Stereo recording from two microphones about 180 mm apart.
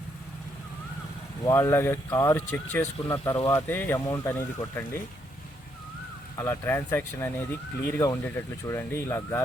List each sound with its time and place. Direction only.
1.5 s speech: 15° left (ahead or behind)
6.3 s speech: 15° left (ahead or behind)